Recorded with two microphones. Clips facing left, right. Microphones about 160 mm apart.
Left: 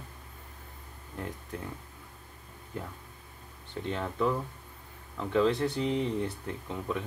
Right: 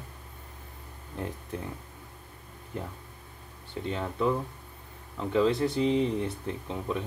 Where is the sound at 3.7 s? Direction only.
5° right (ahead or behind).